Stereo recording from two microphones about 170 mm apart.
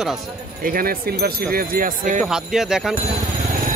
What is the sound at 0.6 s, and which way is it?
Speech, 55° right (ahead or behind).